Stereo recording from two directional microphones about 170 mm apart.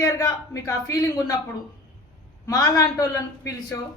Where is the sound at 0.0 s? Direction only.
20° left (ahead or behind).